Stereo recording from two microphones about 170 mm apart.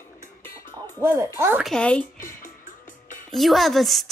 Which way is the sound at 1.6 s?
5° left (ahead or behind).